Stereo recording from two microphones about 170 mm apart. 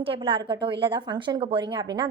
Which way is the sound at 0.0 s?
30° right (ahead or behind).